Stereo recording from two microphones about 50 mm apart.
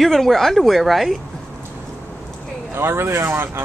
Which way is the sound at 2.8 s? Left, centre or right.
Right.